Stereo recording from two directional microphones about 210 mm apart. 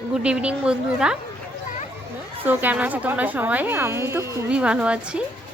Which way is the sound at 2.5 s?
10° right (ahead or behind).